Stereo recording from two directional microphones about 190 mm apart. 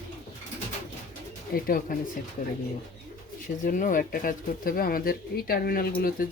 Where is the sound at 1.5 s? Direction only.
50° left (ahead or behind).